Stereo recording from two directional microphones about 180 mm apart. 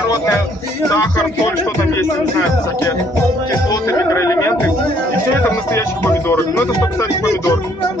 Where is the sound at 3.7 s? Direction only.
20° left (ahead or behind).